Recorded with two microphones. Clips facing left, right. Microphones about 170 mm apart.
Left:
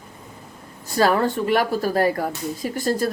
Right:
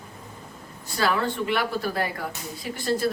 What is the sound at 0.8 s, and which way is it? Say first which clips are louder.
A woman's voice: left 6 dB; 45° left (ahead or behind).